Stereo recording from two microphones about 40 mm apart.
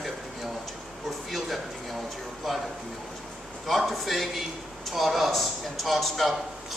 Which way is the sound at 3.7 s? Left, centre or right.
Centre.